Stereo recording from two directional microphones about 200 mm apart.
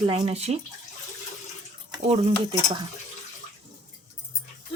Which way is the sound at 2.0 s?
30° right (ahead or behind).